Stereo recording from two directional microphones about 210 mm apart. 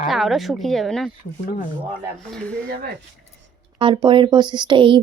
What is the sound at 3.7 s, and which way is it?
Speech, 20° right (ahead or behind).